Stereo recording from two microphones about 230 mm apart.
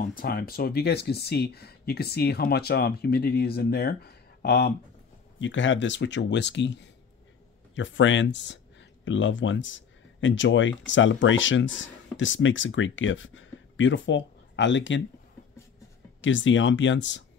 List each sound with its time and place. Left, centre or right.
0.1 s speech: left
5.4 s speech: left
16.2 s speech: left